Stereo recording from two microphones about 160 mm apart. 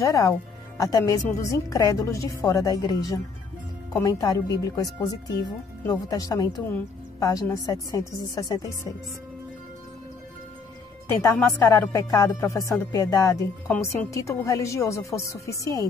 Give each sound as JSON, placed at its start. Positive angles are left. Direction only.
{"t": 0.0, "sound": "speech", "side_deg": 20}
{"t": 11.3, "sound": "speech", "side_deg": 20}